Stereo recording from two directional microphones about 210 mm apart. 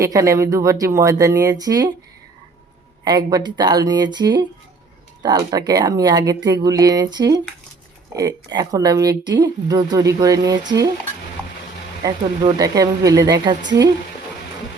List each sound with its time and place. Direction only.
0.0 s speech: 15° right (ahead or behind)
3.0 s speech: 20° right (ahead or behind)
8.5 s speech: 15° right (ahead or behind)
12.0 s speech: 15° right (ahead or behind)